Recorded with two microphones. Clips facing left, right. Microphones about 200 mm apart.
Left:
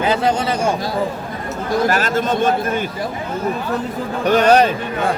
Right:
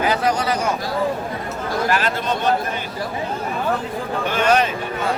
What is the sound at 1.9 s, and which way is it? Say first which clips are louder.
Speech: left 3 dB; 45° left (ahead or behind).